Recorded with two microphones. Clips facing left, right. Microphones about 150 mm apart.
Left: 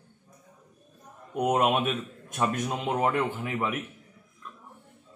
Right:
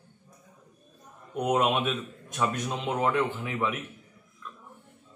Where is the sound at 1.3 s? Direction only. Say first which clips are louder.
Left 1 dB; 10° left (ahead or behind).